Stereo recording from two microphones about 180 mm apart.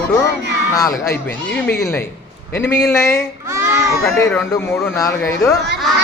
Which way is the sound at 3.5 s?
15° right (ahead or behind).